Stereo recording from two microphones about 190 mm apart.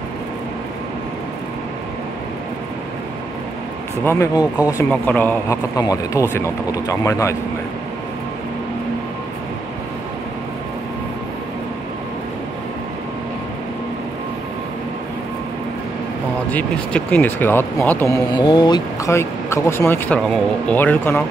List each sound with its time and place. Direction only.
4.0 s speech: 15° left (ahead or behind)
16.4 s speech: 5° left (ahead or behind)
18.1 s speech: 25° left (ahead or behind)